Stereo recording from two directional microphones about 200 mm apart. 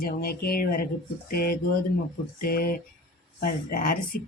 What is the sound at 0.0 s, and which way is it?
Speech, 50° left (ahead or behind).